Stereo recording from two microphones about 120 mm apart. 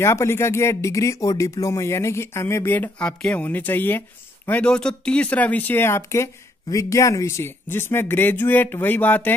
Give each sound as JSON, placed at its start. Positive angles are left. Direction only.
{"t": 0.0, "sound": "speech", "side_deg": 25}